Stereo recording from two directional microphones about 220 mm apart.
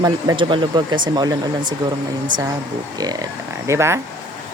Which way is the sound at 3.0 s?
20° right (ahead or behind).